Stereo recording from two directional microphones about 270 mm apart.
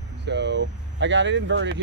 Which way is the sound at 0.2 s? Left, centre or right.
Right.